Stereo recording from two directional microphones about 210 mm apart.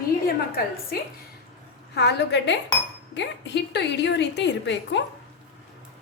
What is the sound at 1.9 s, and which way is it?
A woman's voice, 50° left (ahead or behind).